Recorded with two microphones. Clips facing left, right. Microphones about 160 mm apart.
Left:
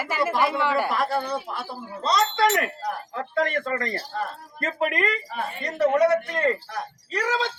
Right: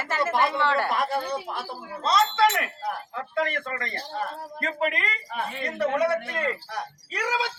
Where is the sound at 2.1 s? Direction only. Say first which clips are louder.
Even; 40° left (ahead or behind).